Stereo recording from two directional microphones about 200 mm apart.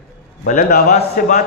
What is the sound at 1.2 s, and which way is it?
Speech, 40° left (ahead or behind).